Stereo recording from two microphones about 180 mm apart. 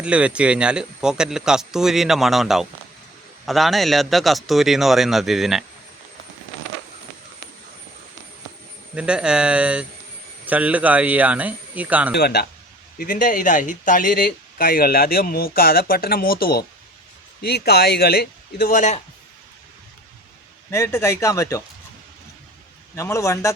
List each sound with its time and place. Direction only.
0.0 s speech: 5° right (ahead or behind)
9.0 s speech: 5° right (ahead or behind)
12.1 s speech: 65° left (ahead or behind)
13.0 s speech: 50° left (ahead or behind)
20.7 s speech: 15° left (ahead or behind)
23.0 s speech: 15° left (ahead or behind)